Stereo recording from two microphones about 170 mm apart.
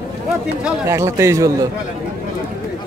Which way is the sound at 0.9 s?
15° right (ahead or behind).